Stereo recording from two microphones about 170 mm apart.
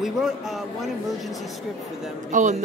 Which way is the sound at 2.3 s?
45° right (ahead or behind).